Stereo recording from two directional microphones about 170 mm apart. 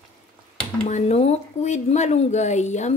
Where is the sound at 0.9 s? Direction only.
40° left (ahead or behind).